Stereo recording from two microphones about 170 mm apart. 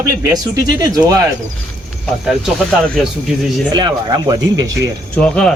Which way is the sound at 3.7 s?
25° right (ahead or behind).